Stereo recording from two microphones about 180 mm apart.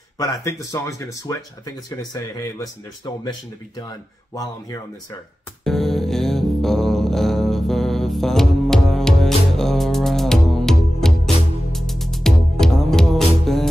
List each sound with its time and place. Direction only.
0.2 s speech: 20° left (ahead or behind)
5.6 s music: centre (ahead or behind)